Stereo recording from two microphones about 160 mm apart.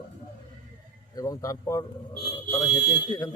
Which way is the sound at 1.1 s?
20° left (ahead or behind).